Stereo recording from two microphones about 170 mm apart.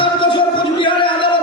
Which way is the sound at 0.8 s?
30° left (ahead or behind).